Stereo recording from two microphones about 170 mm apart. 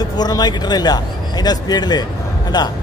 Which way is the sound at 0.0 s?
25° left (ahead or behind).